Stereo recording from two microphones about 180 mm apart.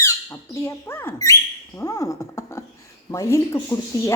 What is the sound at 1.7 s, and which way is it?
Speech, 20° left (ahead or behind).